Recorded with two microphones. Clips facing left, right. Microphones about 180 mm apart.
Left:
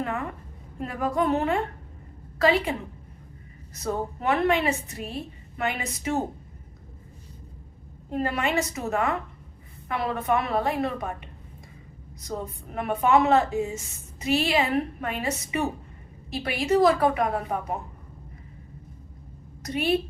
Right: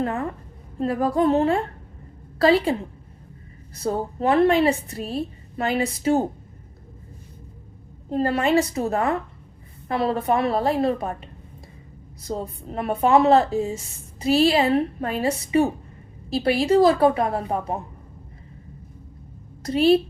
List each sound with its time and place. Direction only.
0.8 s a woman's voice: 35° right (ahead or behind)
3.8 s a woman's voice: 30° right (ahead or behind)
8.1 s a woman's voice: 30° right (ahead or behind)
12.3 s a woman's voice: 30° right (ahead or behind)
19.6 s a woman's voice: 30° right (ahead or behind)